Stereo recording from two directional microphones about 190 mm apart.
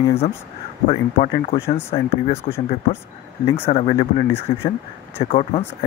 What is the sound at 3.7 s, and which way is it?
Speech, 35° left (ahead or behind).